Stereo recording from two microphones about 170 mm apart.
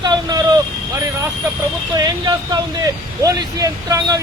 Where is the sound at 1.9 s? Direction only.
25° right (ahead or behind).